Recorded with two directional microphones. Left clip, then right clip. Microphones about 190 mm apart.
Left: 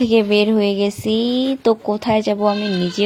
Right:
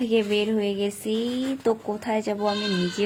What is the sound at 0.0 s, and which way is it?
Speech, 30° left (ahead or behind).